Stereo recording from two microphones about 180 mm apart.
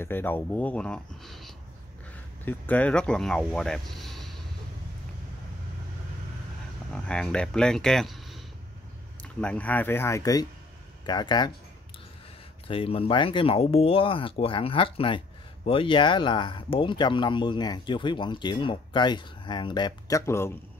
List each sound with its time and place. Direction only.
0.0 s speech: 10° left (ahead or behind)
6.9 s speech: 5° left (ahead or behind); by 11.5 s 25° left (ahead or behind)
12.6 s speech: 30° left (ahead or behind); by 20.5 s 15° left (ahead or behind)